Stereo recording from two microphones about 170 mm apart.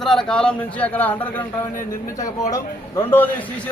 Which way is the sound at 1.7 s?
55° left (ahead or behind).